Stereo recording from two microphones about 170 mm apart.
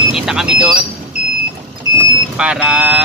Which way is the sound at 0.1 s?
5° right (ahead or behind).